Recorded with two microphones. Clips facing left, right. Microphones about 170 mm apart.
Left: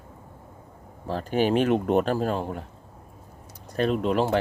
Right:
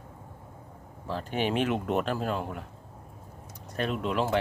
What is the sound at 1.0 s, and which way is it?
Speech, 40° left (ahead or behind).